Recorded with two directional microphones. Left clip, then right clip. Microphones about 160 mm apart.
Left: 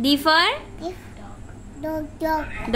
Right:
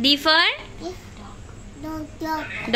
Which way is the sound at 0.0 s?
Centre (ahead or behind).